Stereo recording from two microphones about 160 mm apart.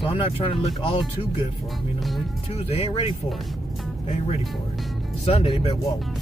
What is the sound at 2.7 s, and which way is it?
Speech, 35° left (ahead or behind).